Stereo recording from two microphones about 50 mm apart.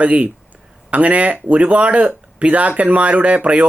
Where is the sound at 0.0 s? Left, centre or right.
Right.